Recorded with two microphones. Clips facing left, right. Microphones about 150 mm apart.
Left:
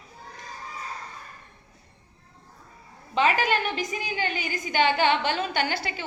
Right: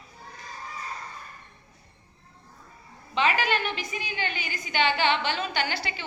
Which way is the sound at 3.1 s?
45° left (ahead or behind).